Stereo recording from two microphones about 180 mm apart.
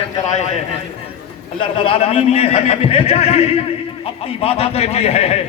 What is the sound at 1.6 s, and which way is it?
A man's voice, 30° left (ahead or behind).